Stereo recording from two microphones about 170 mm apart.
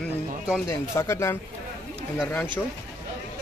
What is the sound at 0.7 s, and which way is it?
Speech, 15° left (ahead or behind).